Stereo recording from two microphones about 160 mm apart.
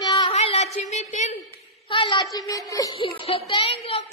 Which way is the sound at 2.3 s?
20° left (ahead or behind).